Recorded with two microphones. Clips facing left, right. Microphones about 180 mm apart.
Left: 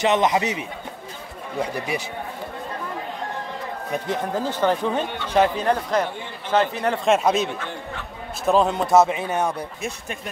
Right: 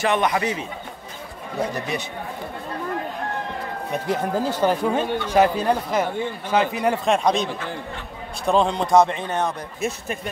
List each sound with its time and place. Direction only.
0.0 s a man's voice: 20° left (ahead or behind)
1.9 s speech: 10° left (ahead or behind)
3.9 s speech: 10° right (ahead or behind)
7.1 s speech: 5° left (ahead or behind)